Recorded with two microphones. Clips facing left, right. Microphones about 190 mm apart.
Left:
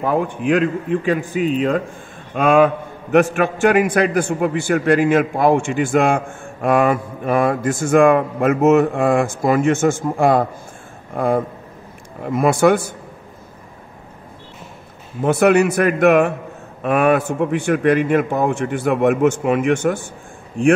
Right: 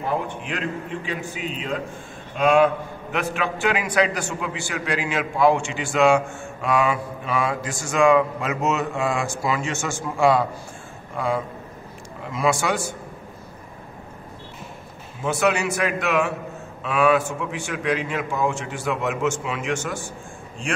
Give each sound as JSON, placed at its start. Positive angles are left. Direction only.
{"t": 0.0, "sound": "a man's voice", "side_deg": 50}
{"t": 15.2, "sound": "a man's voice", "side_deg": 55}